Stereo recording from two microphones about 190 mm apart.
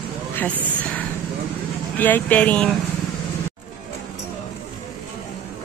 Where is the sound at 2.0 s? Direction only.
10° left (ahead or behind).